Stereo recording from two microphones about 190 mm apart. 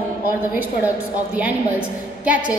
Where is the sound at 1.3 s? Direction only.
10° right (ahead or behind).